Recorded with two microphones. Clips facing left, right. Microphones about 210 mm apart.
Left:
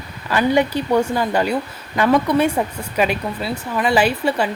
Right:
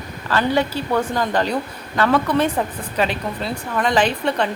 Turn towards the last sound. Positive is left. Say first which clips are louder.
# left 1 dB
turn(degrees=5)  # may be behind; listen again after turning